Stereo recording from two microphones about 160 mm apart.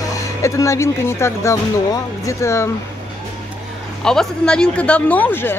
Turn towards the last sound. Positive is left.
turn(degrees=15)  # may be behind; listen again after turning